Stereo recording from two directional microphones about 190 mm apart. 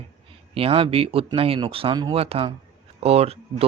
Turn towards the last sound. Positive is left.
turn(degrees=-30)  # may be behind; listen again after turning